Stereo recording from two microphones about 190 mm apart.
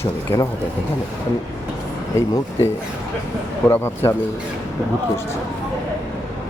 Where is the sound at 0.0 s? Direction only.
15° left (ahead or behind).